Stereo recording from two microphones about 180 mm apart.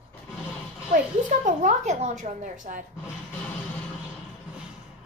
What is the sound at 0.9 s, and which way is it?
Speech, 45° right (ahead or behind).